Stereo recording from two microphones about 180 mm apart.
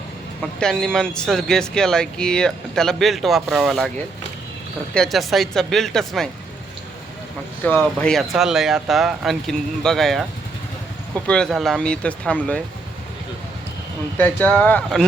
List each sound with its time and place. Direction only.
0.6 s speech: 5° left (ahead or behind)
4.9 s speech: centre (ahead or behind)
7.6 s speech: 5° left (ahead or behind)
11.3 s speech: 5° left (ahead or behind)
14.2 s speech: 10° left (ahead or behind)